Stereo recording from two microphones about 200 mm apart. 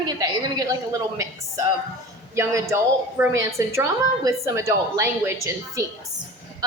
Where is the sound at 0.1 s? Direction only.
20° right (ahead or behind).